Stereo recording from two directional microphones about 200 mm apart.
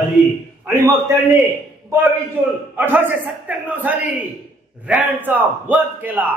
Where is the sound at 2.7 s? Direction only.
10° right (ahead or behind).